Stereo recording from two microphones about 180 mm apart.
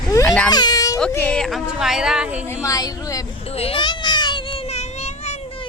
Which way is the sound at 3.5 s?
30° left (ahead or behind).